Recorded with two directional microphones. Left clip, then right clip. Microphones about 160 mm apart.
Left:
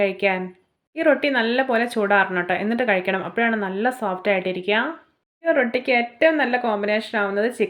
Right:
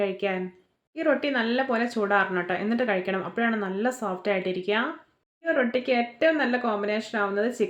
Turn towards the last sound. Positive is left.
turn(degrees=20)  # may be behind; listen again after turning